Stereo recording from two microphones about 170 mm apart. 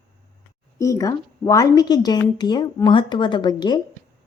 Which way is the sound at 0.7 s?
20° left (ahead or behind).